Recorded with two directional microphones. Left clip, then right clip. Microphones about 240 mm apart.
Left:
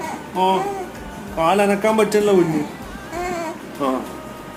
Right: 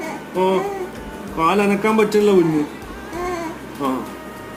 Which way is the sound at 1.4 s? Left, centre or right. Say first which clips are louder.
Left 1 dB; left.